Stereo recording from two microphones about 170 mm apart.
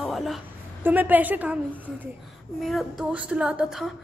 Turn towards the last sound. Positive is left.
turn(degrees=-5)  # may be behind; listen again after turning